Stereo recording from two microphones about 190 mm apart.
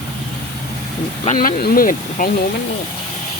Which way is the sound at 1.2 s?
45° left (ahead or behind).